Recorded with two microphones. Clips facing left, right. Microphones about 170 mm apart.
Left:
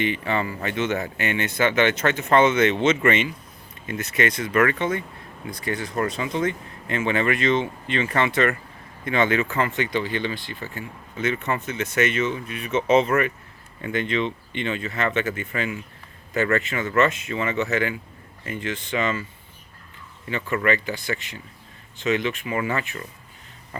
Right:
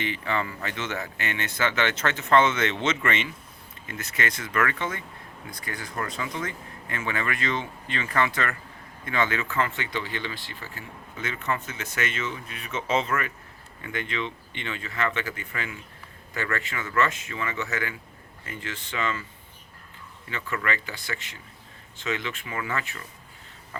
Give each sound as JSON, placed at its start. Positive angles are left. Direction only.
{"t": 0.0, "sound": "speech", "side_deg": 20}
{"t": 20.7, "sound": "speech", "side_deg": 20}